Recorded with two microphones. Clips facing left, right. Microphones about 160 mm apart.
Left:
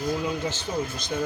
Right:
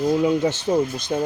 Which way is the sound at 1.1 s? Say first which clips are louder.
Right 5 dB; 45° right (ahead or behind).